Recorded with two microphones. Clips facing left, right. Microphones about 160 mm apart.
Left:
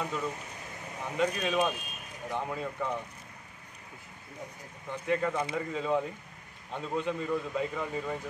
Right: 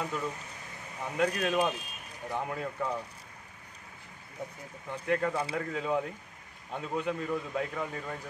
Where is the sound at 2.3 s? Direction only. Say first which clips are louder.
Even; 5° right (ahead or behind).